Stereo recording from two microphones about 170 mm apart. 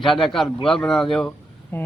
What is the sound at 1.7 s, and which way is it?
Speech, 15° left (ahead or behind).